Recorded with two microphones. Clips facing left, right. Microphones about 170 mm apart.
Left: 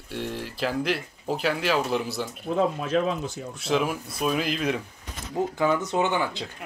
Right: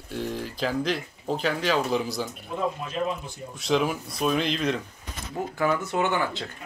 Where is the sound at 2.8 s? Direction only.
90° left.